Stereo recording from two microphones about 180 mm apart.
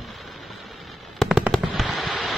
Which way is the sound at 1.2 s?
5° right (ahead or behind).